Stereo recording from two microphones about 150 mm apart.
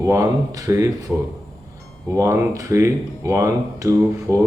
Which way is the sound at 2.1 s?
20° right (ahead or behind).